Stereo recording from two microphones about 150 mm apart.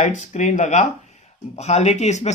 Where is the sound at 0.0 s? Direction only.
55° left (ahead or behind).